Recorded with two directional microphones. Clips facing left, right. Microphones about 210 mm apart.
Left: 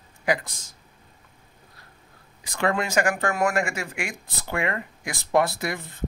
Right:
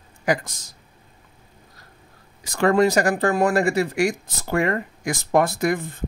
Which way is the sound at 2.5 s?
40° right (ahead or behind).